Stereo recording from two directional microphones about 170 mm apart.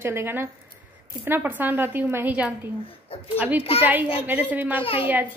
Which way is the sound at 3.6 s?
35° left (ahead or behind).